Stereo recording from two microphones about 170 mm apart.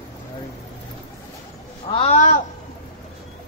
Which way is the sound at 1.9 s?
35° left (ahead or behind).